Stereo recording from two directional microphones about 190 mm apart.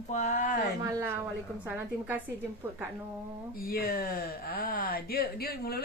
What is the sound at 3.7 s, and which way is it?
Speech, 50° left (ahead or behind).